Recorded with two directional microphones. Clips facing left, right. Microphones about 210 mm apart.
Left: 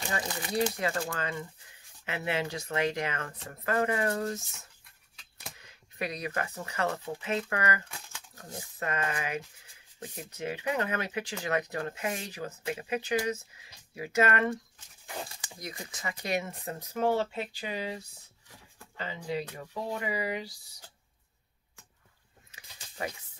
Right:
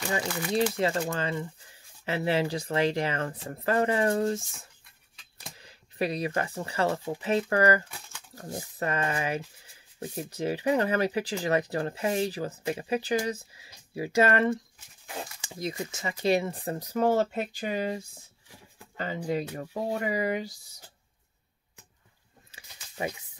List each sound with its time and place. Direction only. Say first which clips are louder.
0.7 s speech: right 5 dB; 25° right (ahead or behind)
5.6 s speech: right 6 dB; 35° right (ahead or behind)
15.6 s speech: right 7 dB; 25° right (ahead or behind); by 20.5 s 45° right (ahead or behind)
22.5 s a sound: even; 25° right (ahead or behind)